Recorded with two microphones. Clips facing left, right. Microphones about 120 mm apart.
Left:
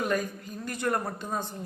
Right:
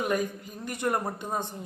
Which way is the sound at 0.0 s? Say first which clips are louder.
Right 1 dB; 15° right (ahead or behind).